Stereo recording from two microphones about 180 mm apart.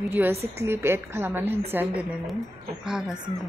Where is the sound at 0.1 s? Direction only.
10° right (ahead or behind).